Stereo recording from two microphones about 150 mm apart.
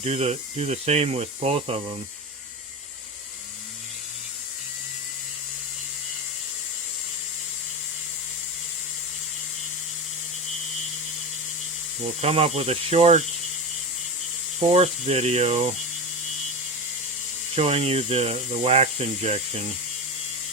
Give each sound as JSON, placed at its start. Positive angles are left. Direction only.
{"t": 0.0, "sound": "speech", "side_deg": -45}
{"t": 12.2, "sound": "speech", "side_deg": -45}
{"t": 14.6, "sound": "speech", "side_deg": -45}
{"t": 17.5, "sound": "speech", "side_deg": -45}